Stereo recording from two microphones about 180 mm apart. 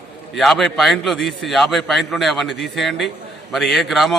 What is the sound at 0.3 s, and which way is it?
A man's voice, centre (ahead or behind).